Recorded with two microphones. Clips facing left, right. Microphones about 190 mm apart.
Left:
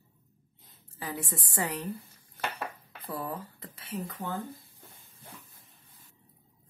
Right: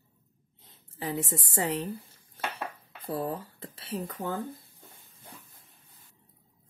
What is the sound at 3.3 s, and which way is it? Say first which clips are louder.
Speech: right 3 dB; 30° right (ahead or behind).